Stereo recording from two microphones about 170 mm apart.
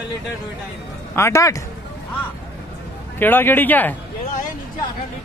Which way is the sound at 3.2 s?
10° left (ahead or behind).